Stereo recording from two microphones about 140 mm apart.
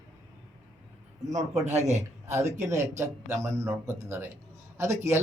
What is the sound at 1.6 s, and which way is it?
Speech, 55° right (ahead or behind).